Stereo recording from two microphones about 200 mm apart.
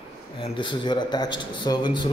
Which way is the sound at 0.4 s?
25° left (ahead or behind).